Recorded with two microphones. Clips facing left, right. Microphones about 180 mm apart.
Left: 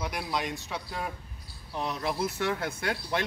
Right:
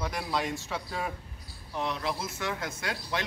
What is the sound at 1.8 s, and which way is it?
Speech, 45° left (ahead or behind).